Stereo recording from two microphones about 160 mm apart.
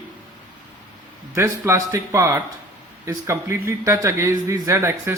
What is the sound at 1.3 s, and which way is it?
Speech, 15° right (ahead or behind).